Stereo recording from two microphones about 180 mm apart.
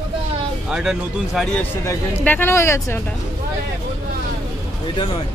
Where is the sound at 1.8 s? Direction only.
10° left (ahead or behind).